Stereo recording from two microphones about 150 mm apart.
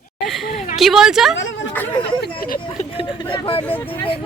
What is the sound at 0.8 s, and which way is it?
Speech, centre (ahead or behind).